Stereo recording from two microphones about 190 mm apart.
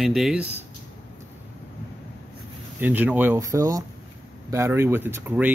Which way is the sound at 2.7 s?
10° right (ahead or behind).